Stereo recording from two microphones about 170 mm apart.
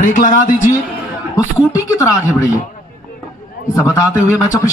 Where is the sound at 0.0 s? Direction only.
50° left (ahead or behind).